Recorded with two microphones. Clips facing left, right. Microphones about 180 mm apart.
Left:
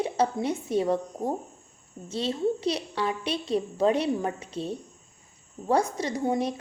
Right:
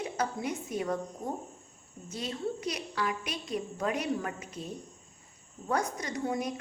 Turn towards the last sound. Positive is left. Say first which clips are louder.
# left 6 dB
turn(degrees=25)  # may be behind; listen again after turning